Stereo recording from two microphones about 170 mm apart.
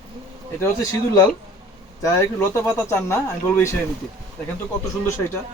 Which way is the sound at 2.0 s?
15° left (ahead or behind).